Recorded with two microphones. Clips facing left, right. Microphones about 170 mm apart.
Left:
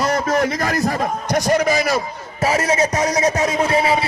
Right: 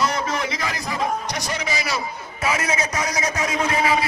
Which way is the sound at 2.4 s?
35° left (ahead or behind).